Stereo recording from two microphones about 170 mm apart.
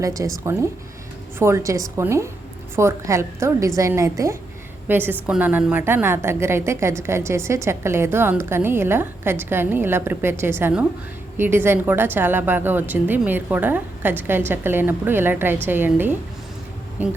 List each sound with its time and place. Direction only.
0.0 s a woman's voice: 20° right (ahead or behind)